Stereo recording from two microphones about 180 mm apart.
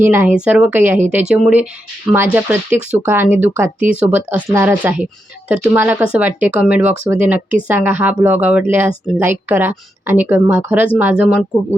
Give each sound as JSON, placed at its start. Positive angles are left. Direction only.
{"t": 0.0, "sound": "speech", "side_deg": -10}